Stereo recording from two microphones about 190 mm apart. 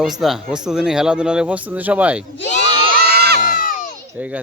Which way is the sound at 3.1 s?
55° right (ahead or behind).